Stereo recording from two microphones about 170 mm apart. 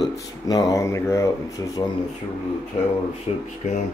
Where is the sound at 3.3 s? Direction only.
40° left (ahead or behind).